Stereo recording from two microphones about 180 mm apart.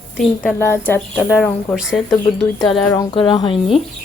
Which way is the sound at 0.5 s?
15° left (ahead or behind).